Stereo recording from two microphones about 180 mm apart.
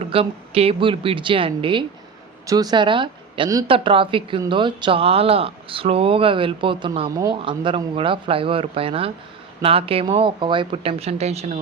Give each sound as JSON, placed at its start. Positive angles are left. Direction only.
{"t": 0.0, "sound": "speech", "side_deg": -30}